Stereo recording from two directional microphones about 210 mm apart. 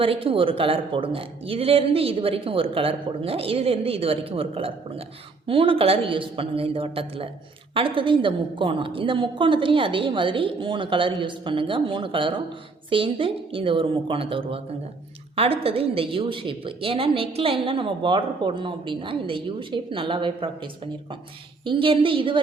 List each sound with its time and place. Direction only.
0.0 s a woman's voice: 25° right (ahead or behind)